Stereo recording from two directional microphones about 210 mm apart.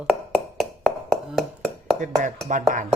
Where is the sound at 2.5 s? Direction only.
40° right (ahead or behind).